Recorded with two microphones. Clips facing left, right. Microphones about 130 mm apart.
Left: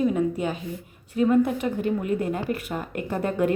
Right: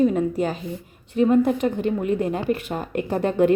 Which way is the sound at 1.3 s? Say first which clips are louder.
Right 2 dB; 35° right (ahead or behind).